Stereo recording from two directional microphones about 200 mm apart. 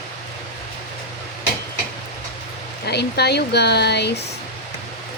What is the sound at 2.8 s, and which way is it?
Speech, 55° left (ahead or behind).